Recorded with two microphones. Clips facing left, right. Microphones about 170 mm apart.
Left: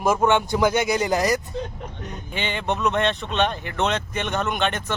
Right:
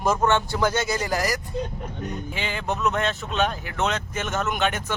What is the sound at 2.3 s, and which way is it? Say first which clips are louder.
Speech: left 4 dB; centre (ahead or behind).